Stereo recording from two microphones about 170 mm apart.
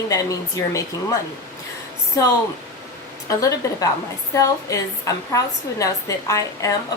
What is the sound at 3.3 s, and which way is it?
A woman's voice, 20° left (ahead or behind).